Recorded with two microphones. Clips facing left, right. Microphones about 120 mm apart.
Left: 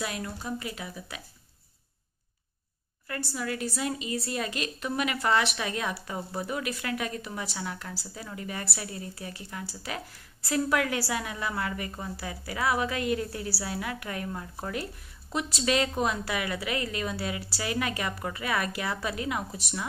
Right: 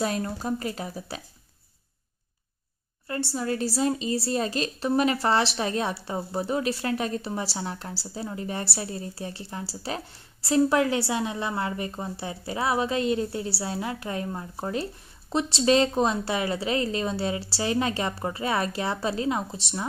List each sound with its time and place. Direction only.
0.0 s a woman's voice: 35° right (ahead or behind)
3.1 s a woman's voice: 30° right (ahead or behind)